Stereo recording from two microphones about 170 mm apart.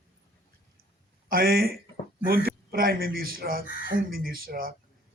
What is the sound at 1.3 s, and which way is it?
Speech, 60° right (ahead or behind).